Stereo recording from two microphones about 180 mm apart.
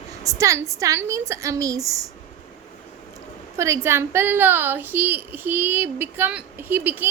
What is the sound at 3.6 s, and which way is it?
A woman's voice, 15° right (ahead or behind).